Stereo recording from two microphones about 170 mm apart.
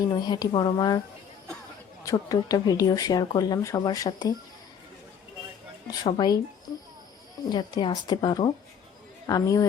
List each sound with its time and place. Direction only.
0.0 s speech: 25° left (ahead or behind)
2.0 s speech: 20° left (ahead or behind)
6.0 s speech: 25° left (ahead or behind)
7.5 s speech: 25° left (ahead or behind)